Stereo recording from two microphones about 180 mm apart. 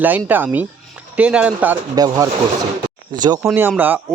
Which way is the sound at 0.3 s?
10° right (ahead or behind).